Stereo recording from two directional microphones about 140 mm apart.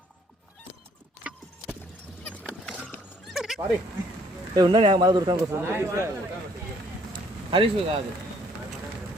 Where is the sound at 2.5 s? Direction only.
10° left (ahead or behind).